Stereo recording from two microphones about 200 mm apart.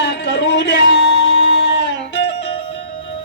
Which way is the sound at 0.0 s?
60° left (ahead or behind).